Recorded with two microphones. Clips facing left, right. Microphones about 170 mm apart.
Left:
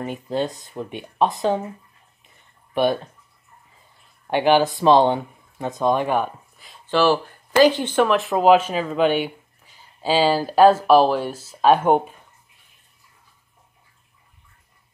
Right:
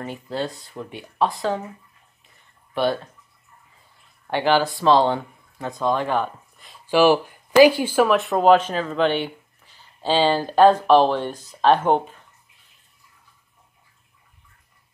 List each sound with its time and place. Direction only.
0.0 s speech: 20° left (ahead or behind)
2.7 s speech: 15° left (ahead or behind)
4.3 s speech: 15° left (ahead or behind)
6.5 s a sound: centre (ahead or behind)
6.9 s speech: 15° right (ahead or behind); by 12.0 s 10° left (ahead or behind)